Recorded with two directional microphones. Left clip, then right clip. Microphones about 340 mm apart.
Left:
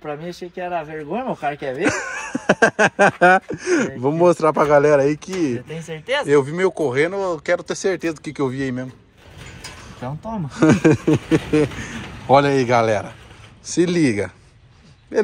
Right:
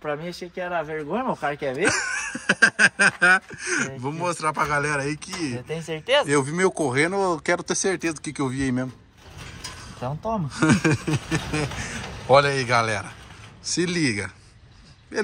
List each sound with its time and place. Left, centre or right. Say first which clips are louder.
0.3 s speech: left 3 dB; centre
1.3 s speech: left 2 dB; centre
5.7 s speech: right 1 dB; right
6.2 s speech: left 5 dB; centre
10.2 s speech: left 5 dB; centre